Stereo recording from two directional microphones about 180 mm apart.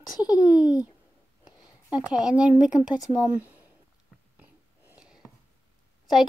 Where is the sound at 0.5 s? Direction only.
20° left (ahead or behind).